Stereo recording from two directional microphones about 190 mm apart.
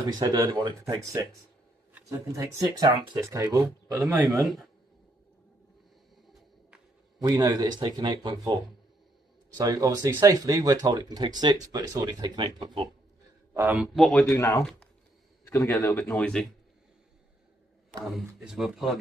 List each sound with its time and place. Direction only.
0.1 s speech: 20° right (ahead or behind)
7.2 s speech: 20° right (ahead or behind)
9.6 s speech: 15° right (ahead or behind)
13.5 s speech: 10° right (ahead or behind)
15.4 s speech: 15° left (ahead or behind)
18.0 s speech: centre (ahead or behind)